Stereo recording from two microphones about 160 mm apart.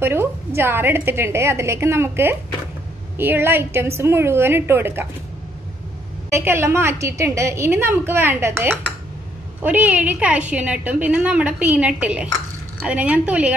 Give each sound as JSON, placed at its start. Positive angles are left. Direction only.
{"t": 0.0, "sound": "a sound", "side_deg": -15}
{"t": 0.6, "sound": "a woman's voice", "side_deg": -15}
{"t": 6.3, "sound": "a woman's voice", "side_deg": -15}